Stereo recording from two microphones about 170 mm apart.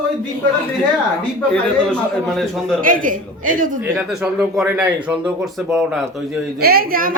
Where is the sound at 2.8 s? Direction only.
55° right (ahead or behind).